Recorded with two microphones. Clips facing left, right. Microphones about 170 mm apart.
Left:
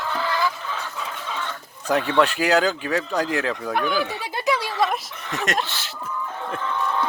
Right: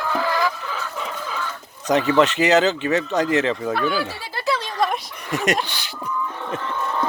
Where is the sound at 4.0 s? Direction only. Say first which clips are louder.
Left 1 dB; 15° left (ahead or behind).